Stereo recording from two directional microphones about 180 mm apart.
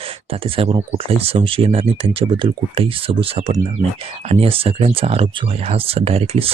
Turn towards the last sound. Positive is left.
turn(degrees=-35)  # may be behind; listen again after turning